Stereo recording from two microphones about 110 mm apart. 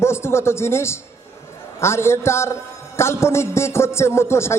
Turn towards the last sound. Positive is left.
turn(degrees=25)  # may be behind; listen again after turning